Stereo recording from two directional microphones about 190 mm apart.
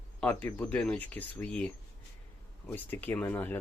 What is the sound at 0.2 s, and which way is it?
Speech, 5° left (ahead or behind).